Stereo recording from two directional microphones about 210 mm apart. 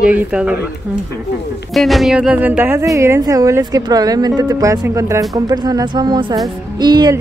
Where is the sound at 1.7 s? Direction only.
Centre (ahead or behind).